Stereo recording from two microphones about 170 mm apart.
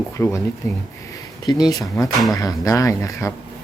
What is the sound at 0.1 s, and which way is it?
Speech, 15° left (ahead or behind).